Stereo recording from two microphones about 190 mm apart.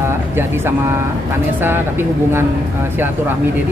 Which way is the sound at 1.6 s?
10° right (ahead or behind).